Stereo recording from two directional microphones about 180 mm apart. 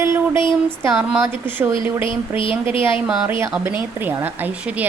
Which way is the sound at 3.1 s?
5° right (ahead or behind).